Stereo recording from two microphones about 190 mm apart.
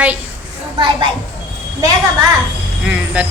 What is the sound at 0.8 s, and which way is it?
Speech, 25° right (ahead or behind).